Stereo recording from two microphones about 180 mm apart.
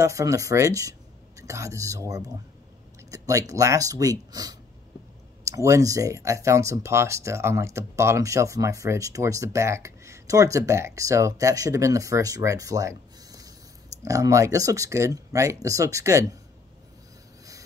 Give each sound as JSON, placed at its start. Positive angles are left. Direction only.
{"t": 0.0, "sound": "speech", "side_deg": -15}